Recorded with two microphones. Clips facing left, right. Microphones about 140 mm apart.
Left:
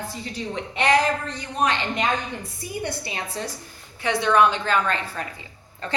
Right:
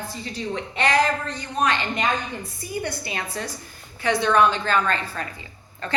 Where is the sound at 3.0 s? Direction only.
25° left (ahead or behind).